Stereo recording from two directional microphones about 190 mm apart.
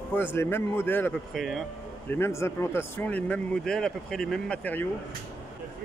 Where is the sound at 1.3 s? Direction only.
Centre (ahead or behind).